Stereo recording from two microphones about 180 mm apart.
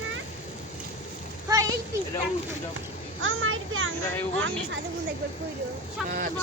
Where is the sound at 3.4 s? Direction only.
90° right.